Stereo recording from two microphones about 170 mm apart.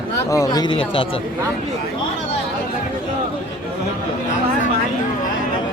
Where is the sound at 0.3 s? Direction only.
20° left (ahead or behind).